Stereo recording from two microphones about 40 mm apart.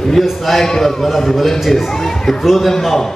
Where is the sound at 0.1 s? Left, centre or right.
Centre.